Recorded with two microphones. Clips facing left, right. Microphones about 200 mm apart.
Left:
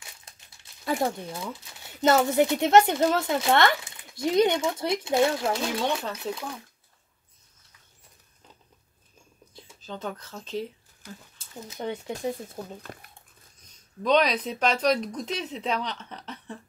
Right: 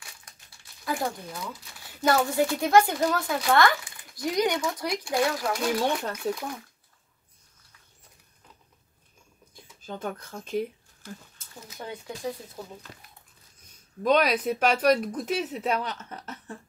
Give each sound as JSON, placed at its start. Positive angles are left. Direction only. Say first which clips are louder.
{"t": 0.8, "sound": "speech", "louder": "left 3 dB", "side_deg": 25}
{"t": 5.9, "sound": "speech", "louder": "right 1 dB", "side_deg": -10}
{"t": 9.8, "sound": "speech", "louder": "right 1 dB", "side_deg": -10}
{"t": 11.3, "sound": "speech", "louder": "left 4 dB", "side_deg": 25}
{"t": 12.8, "sound": "speech", "louder": "left 5 dB", "side_deg": 50}
{"t": 14.0, "sound": "speech", "louder": "even", "side_deg": -10}